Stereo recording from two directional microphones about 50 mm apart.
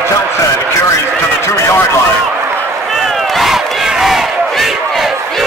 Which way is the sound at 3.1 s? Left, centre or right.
Centre.